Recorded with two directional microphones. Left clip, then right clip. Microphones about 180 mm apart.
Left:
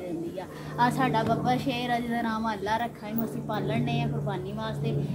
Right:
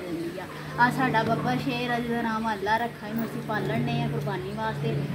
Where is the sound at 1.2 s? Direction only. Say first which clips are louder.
Right 1 dB; 25° left (ahead or behind).